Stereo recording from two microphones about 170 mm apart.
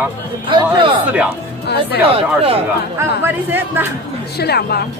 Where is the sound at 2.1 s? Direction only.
35° right (ahead or behind).